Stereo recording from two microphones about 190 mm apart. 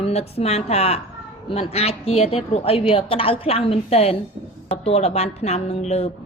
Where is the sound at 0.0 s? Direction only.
30° left (ahead or behind).